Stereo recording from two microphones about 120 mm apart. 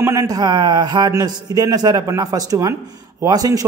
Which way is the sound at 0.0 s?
20° right (ahead or behind).